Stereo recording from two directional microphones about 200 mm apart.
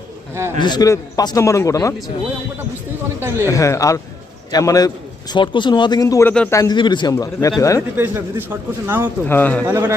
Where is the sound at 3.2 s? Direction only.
10° right (ahead or behind).